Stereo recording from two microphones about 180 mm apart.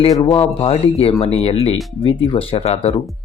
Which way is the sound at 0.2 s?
30° left (ahead or behind).